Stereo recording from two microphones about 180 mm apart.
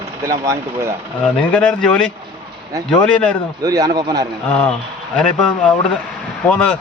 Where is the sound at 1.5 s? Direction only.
5° left (ahead or behind).